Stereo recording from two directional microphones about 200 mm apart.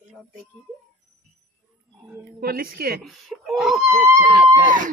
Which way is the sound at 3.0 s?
Centre (ahead or behind).